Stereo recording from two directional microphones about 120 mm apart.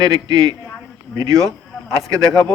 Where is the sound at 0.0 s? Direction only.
30° right (ahead or behind).